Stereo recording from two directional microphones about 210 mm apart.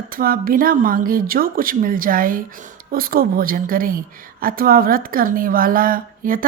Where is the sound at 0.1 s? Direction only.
45° right (ahead or behind).